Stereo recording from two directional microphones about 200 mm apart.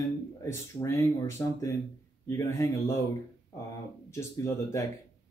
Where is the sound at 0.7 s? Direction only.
15° left (ahead or behind).